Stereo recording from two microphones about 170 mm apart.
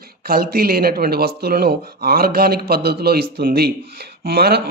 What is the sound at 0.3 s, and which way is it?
Speech, 60° right (ahead or behind).